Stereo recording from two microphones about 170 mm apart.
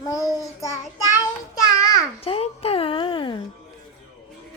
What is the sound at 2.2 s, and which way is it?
Music, 35° left (ahead or behind).